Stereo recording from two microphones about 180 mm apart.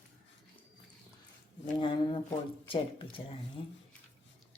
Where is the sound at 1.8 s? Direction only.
25° left (ahead or behind).